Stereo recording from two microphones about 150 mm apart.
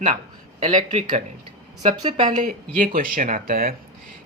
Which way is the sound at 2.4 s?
65° right (ahead or behind).